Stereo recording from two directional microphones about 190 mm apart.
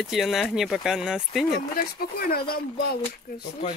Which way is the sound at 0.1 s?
Centre (ahead or behind).